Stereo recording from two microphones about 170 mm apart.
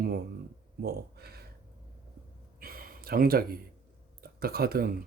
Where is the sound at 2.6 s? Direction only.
60° right (ahead or behind).